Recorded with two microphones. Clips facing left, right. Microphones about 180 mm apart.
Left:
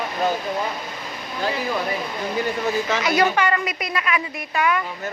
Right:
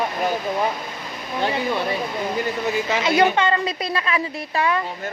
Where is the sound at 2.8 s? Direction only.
20° right (ahead or behind).